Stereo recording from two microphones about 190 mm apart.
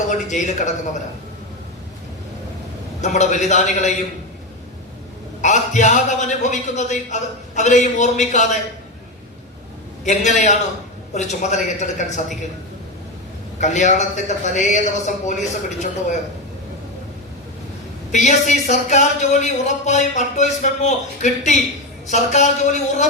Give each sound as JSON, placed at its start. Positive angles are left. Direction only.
{"t": 0.1, "sound": "speech", "side_deg": 40}
{"t": 3.0, "sound": "speech", "side_deg": 40}
{"t": 5.4, "sound": "speech", "side_deg": 40}
{"t": 10.1, "sound": "speech", "side_deg": 40}
{"t": 13.6, "sound": "speech", "side_deg": 40}
{"t": 18.1, "sound": "speech", "side_deg": 40}